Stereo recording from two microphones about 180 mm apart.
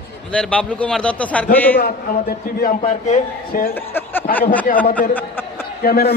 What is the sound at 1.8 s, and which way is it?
Speech, 55° left (ahead or behind).